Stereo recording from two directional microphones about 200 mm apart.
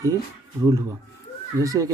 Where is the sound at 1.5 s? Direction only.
15° right (ahead or behind).